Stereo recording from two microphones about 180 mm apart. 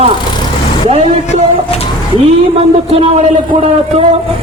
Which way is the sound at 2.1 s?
35° right (ahead or behind).